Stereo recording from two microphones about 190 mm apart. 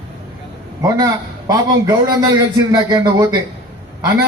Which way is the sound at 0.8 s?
20° right (ahead or behind).